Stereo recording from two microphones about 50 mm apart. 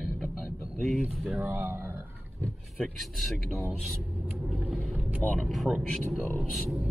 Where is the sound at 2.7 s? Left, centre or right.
Centre.